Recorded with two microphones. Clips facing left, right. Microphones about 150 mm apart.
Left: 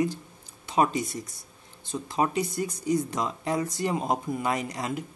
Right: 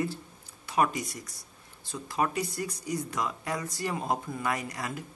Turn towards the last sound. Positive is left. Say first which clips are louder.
# left 4 dB
turn(degrees=20)  # may be behind; listen again after turning